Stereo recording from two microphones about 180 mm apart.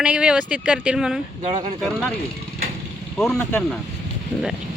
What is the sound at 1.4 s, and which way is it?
Speech, 30° right (ahead or behind).